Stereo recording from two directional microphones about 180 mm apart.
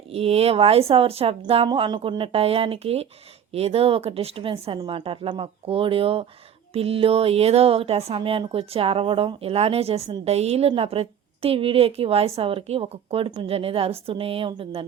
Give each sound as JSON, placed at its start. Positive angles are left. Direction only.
{"t": 0.1, "sound": "speech", "side_deg": -35}